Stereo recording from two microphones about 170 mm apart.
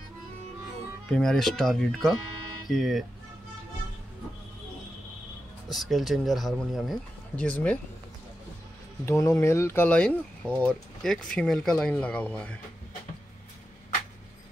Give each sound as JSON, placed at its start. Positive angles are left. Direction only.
{"t": 1.0, "sound": "speech", "side_deg": 5}
{"t": 5.7, "sound": "speech", "side_deg": 0}
{"t": 9.0, "sound": "speech", "side_deg": 15}